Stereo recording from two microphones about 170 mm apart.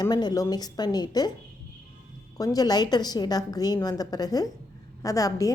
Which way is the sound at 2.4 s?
20° left (ahead or behind).